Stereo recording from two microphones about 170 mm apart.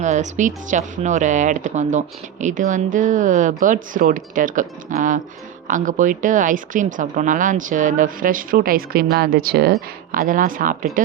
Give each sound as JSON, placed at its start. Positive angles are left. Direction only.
{"t": 0.0, "sound": "speech", "side_deg": -45}
{"t": 10.1, "sound": "speech", "side_deg": -55}